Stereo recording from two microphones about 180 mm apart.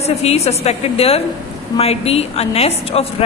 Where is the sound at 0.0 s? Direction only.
35° left (ahead or behind).